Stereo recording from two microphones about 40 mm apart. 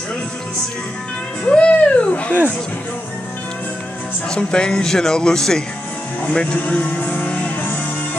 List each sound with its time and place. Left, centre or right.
1.4 s a sound: left
4.3 s speech: left
6.3 s music: left